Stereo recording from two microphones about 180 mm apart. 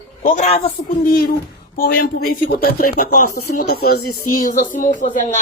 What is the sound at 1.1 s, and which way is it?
A woman's voice, 55° left (ahead or behind).